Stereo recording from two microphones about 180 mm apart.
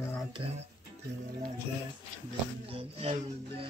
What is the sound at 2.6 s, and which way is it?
Speech, 30° right (ahead or behind).